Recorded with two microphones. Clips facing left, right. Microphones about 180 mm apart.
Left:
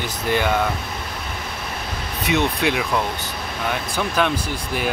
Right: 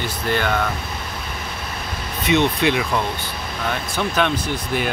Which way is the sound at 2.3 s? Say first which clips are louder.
Right 3 dB; 5° left (ahead or behind).